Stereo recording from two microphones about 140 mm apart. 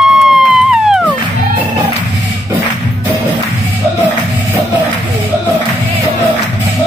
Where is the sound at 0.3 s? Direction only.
5° right (ahead or behind).